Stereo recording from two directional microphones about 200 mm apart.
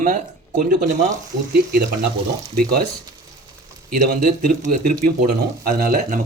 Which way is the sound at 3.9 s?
40° right (ahead or behind).